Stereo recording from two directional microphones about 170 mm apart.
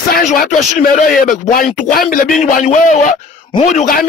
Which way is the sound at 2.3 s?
45° left (ahead or behind).